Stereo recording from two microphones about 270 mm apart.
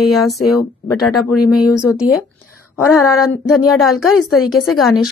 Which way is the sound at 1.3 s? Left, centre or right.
Left.